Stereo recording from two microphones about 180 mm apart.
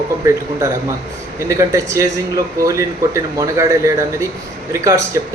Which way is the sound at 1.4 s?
15° right (ahead or behind).